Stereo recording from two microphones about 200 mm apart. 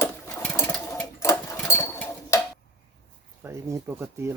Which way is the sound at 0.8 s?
15° left (ahead or behind).